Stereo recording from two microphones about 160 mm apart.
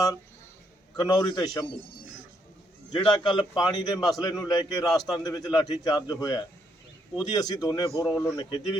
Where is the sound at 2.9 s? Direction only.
30° left (ahead or behind).